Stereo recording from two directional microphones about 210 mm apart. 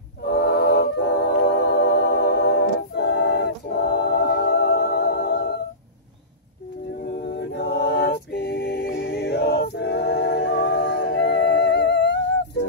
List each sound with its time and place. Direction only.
0.2 s a capella: 50° left (ahead or behind)
7.0 s a capella: 50° left (ahead or behind)